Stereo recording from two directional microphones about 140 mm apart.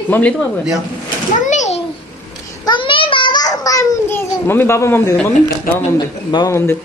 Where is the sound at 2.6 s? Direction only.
35° left (ahead or behind); by 5.1 s 20° left (ahead or behind).